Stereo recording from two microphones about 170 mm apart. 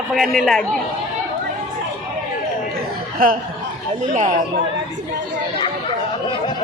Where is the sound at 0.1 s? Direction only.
Centre (ahead or behind).